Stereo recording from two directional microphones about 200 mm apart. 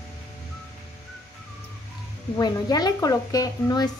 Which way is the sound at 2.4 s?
20° left (ahead or behind).